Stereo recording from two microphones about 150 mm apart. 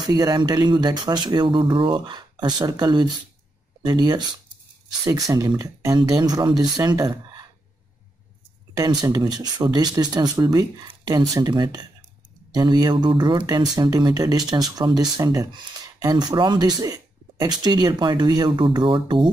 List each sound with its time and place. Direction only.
0.0 s speech: 25° right (ahead or behind)
8.7 s speech: 25° right (ahead or behind)